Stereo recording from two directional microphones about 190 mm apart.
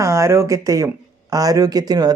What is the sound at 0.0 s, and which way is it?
Speech, 15° right (ahead or behind).